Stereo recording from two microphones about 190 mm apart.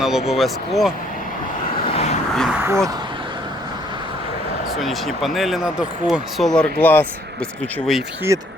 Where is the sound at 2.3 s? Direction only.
Centre (ahead or behind).